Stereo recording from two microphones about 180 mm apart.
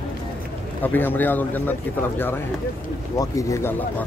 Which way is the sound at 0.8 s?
10° left (ahead or behind).